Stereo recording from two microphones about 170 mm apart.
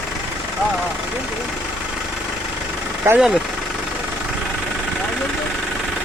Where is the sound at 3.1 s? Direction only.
5° right (ahead or behind).